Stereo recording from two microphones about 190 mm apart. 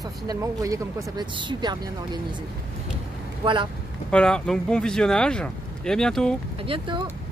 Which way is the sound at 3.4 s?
25° right (ahead or behind).